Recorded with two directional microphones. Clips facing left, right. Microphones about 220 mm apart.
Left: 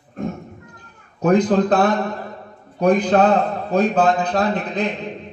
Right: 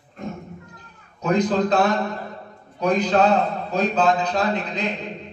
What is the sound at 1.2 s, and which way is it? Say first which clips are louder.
Speech: left 4 dB; 55° left (ahead or behind).